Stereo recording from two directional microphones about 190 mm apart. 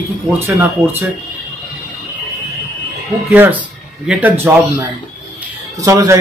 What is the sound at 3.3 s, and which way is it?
Speech, 10° right (ahead or behind).